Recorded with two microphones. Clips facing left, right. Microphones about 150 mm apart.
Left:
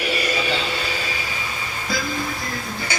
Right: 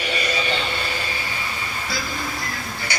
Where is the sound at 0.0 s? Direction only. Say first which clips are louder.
Left 2 dB; 10° left (ahead or behind).